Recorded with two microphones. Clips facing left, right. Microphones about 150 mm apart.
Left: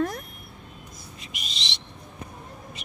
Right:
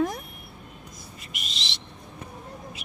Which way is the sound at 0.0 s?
10° right (ahead or behind).